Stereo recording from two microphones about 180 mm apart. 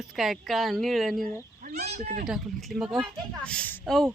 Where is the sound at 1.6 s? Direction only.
60° right (ahead or behind).